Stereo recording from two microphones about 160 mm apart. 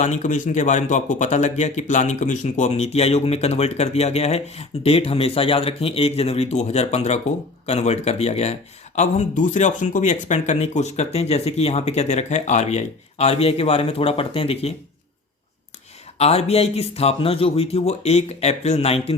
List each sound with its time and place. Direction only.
0.0 s speech: 50° left (ahead or behind)
16.1 s speech: 40° left (ahead or behind)